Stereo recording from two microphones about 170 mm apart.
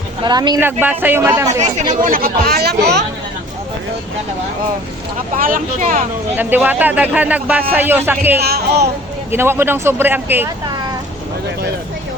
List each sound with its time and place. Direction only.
0.2 s speech: 25° right (ahead or behind)
0.6 s speech: 10° right (ahead or behind)
1.5 s speech: 45° right (ahead or behind); by 3.0 s 70° right (ahead or behind)
5.4 s speech: 55° right (ahead or behind)
6.3 s speech: 10° right (ahead or behind)
8.4 s speech: 70° right (ahead or behind)
9.3 s speech: 15° right (ahead or behind)